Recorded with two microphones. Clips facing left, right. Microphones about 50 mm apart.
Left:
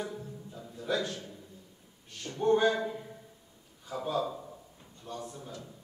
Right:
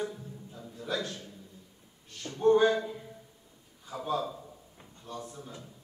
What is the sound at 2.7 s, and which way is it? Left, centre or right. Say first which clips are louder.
Speech: right 1 dB; left.